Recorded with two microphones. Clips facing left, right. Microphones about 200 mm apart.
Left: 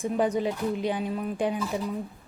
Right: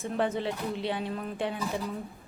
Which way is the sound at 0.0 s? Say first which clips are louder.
Left 4 dB; 15° left (ahead or behind).